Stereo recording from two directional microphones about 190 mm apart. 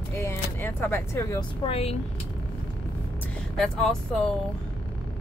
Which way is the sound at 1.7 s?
30° left (ahead or behind).